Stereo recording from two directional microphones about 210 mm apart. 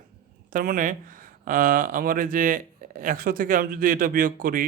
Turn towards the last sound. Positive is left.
turn(degrees=-40)  # may be behind; listen again after turning